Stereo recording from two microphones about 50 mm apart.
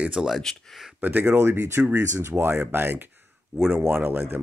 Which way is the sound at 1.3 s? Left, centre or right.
Right.